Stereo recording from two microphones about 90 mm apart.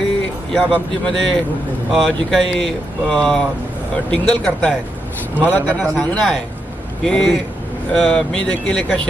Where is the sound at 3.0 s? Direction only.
5° left (ahead or behind).